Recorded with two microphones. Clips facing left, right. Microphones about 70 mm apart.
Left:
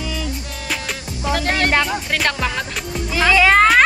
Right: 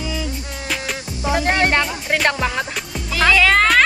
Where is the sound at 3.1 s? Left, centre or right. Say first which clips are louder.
Left 1 dB; centre.